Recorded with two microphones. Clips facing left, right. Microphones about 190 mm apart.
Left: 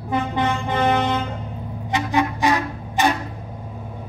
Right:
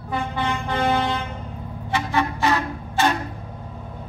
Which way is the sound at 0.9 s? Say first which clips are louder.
Left 2 dB; 20° left (ahead or behind).